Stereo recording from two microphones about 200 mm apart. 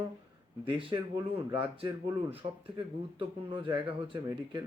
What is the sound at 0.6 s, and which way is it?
Speech, 25° right (ahead or behind).